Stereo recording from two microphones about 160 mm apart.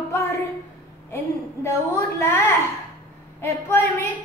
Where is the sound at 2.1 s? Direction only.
20° left (ahead or behind).